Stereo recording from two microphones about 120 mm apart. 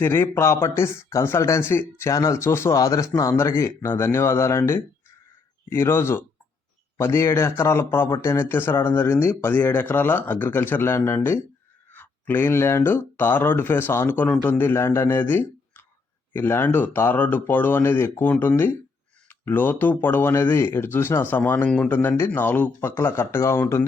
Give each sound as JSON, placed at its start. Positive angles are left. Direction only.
{"t": 0.0, "sound": "speech", "side_deg": 20}